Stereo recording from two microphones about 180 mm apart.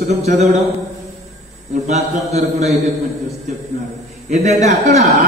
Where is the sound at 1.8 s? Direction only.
40° right (ahead or behind).